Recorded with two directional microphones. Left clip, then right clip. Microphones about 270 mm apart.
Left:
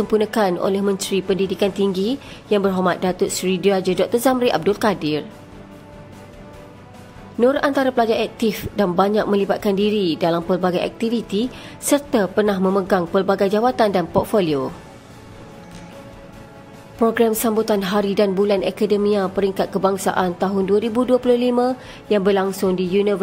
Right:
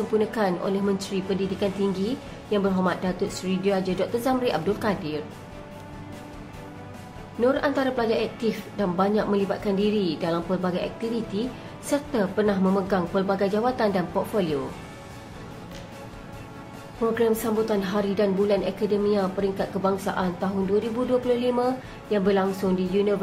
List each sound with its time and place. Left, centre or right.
0.1 s a woman's voice: left
7.3 s a woman's voice: left
17.0 s a woman's voice: left